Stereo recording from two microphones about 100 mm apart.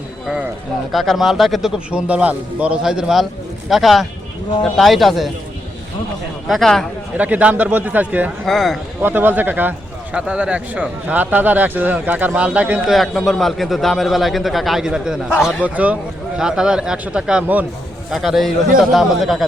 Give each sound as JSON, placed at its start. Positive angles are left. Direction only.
{"t": 0.9, "sound": "a man's voice", "side_deg": 0}
{"t": 6.5, "sound": "a man's voice", "side_deg": 5}
{"t": 7.2, "sound": "a man's voice", "side_deg": -15}
{"t": 8.4, "sound": "a man's voice", "side_deg": 0}
{"t": 9.0, "sound": "a man's voice", "side_deg": -20}
{"t": 12.9, "sound": "a man's voice", "side_deg": 0}
{"t": 18.1, "sound": "a man's voice", "side_deg": 0}